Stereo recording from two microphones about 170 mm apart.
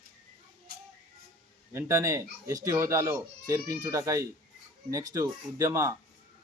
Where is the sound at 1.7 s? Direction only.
15° right (ahead or behind).